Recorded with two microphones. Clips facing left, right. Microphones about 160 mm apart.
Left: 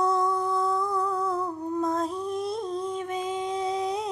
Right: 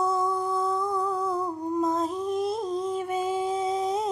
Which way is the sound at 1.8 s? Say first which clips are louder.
Right 1 dB; centre (ahead or behind).